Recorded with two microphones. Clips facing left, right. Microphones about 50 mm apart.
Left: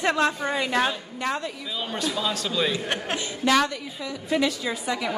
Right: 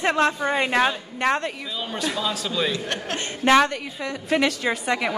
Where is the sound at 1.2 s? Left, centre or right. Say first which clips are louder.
Right 6 dB; right.